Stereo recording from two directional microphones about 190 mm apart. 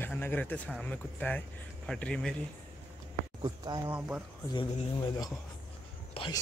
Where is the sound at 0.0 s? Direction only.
10° left (ahead or behind).